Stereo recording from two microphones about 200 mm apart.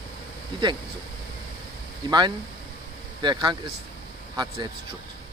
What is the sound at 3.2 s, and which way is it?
Speech, 20° right (ahead or behind).